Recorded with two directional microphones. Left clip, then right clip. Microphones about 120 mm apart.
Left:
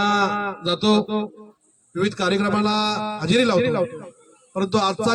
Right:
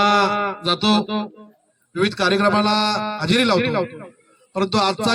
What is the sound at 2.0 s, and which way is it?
A man's voice, 15° right (ahead or behind).